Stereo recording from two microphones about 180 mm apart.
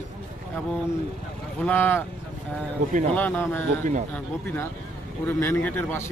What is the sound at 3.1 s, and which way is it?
A man's voice, 10° left (ahead or behind).